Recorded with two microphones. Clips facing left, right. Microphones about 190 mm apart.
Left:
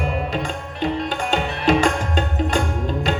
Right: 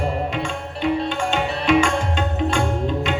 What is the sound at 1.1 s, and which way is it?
Tabla, 35° left (ahead or behind).